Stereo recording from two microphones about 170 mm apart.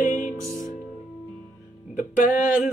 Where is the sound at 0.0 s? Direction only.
45° left (ahead or behind).